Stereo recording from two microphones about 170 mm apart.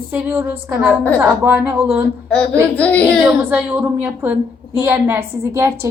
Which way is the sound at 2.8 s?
10° left (ahead or behind).